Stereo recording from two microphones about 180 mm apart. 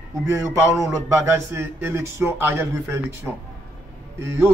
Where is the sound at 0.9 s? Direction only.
15° right (ahead or behind).